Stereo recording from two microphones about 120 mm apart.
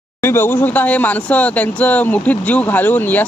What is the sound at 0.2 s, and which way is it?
Speech, 20° left (ahead or behind).